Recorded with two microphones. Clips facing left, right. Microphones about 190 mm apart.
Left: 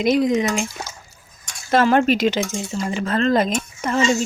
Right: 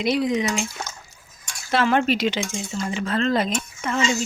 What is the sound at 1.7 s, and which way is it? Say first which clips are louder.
Speech: left 4 dB; 45° left (ahead or behind).